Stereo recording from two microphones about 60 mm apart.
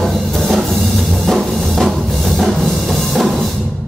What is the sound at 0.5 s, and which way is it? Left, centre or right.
Music, centre.